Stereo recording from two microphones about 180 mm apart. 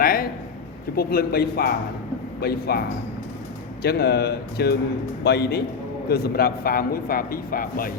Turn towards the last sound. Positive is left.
turn(degrees=55)  # may be behind; listen again after turning